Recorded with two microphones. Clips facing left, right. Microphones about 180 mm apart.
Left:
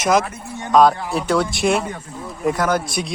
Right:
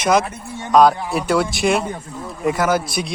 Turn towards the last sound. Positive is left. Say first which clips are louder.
# right 1 dB
turn(degrees=0)  # may be behind; listen again after turning